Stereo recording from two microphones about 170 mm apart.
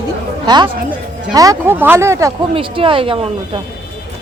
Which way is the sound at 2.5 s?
30° right (ahead or behind).